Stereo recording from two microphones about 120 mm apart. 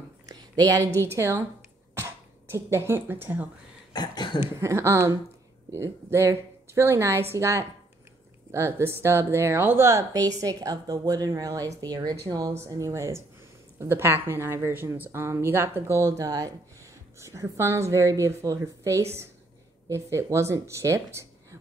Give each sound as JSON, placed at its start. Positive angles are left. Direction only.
{"t": 0.3, "sound": "a sound", "side_deg": -30}
{"t": 1.1, "sound": "speech", "side_deg": -25}
{"t": 3.9, "sound": "cough", "side_deg": 35}
{"t": 4.4, "sound": "speech", "side_deg": -20}